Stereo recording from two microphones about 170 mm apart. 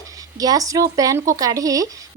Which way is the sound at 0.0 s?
20° right (ahead or behind).